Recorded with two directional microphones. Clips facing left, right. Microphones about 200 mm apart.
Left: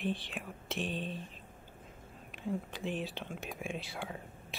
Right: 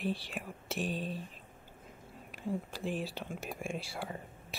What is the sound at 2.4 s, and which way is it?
Speech, 5° right (ahead or behind).